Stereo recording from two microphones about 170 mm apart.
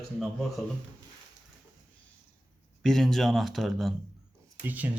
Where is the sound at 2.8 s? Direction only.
Centre (ahead or behind).